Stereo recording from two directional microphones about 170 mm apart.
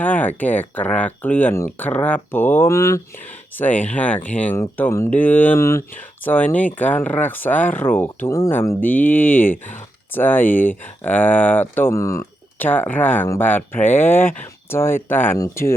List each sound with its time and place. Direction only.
0.0 s speech: 10° left (ahead or behind)
9.0 s speech: 50° left (ahead or behind)
9.3 s speech: 10° left (ahead or behind)